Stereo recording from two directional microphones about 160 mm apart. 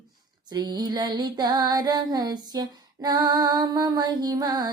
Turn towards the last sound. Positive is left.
turn(degrees=-25)  # may be behind; listen again after turning